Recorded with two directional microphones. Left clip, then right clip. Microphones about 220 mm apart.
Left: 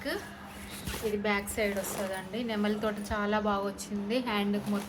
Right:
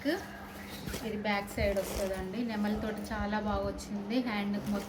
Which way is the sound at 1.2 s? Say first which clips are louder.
Even; 55° left (ahead or behind).